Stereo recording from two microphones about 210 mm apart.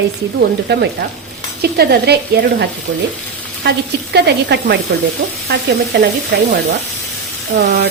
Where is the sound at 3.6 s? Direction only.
55° right (ahead or behind).